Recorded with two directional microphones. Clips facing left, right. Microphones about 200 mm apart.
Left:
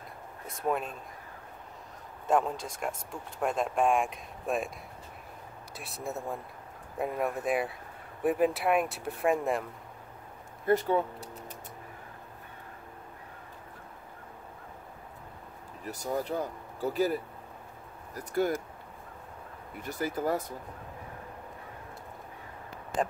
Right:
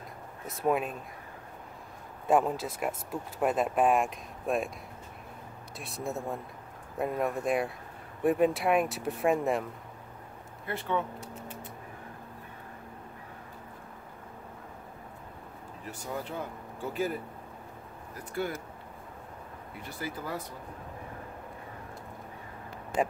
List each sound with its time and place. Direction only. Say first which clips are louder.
0.5 s speech: right 3 dB; 5° right (ahead or behind)
2.2 s speech: right 2 dB; 5° right (ahead or behind)
5.8 s speech: right 2 dB; centre (ahead or behind)
10.7 s speech: left 6 dB; 40° left (ahead or behind)
15.9 s speech: left 5 dB; 40° left (ahead or behind)
19.8 s speech: left 7 dB; 45° left (ahead or behind)